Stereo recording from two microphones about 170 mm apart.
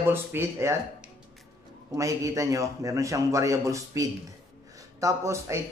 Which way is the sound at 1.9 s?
20° right (ahead or behind).